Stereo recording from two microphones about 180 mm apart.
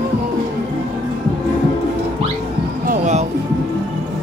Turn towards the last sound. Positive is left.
turn(degrees=-40)  # may be behind; listen again after turning